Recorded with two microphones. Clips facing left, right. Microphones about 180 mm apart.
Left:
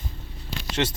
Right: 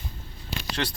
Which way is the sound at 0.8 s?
20° left (ahead or behind).